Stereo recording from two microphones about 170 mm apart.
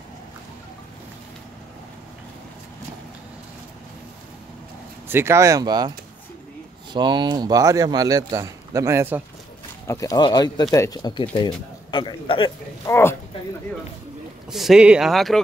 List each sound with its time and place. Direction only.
5.0 s speech: 15° right (ahead or behind)
9.8 s speech: 20° left (ahead or behind)
12.8 s speech: 15° left (ahead or behind)
14.5 s speech: centre (ahead or behind)